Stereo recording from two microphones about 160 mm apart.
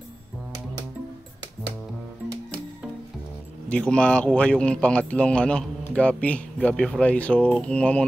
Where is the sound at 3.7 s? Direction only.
5° left (ahead or behind).